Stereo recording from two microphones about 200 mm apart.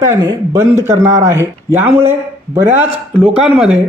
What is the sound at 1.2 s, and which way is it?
Speech, 10° right (ahead or behind).